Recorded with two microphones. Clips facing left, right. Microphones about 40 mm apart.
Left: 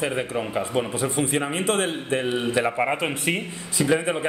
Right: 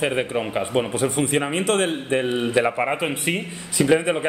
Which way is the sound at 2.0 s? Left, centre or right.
Right.